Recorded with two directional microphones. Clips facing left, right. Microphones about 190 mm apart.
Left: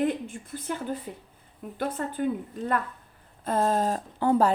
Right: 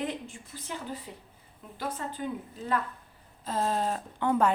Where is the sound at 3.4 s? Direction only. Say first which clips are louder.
Left 5 dB; 50° left (ahead or behind); by 4.5 s 35° left (ahead or behind).